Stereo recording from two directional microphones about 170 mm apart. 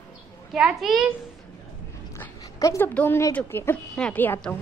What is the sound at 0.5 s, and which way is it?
Speech, 5° right (ahead or behind).